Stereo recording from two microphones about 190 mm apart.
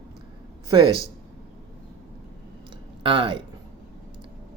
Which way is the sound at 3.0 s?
25° right (ahead or behind).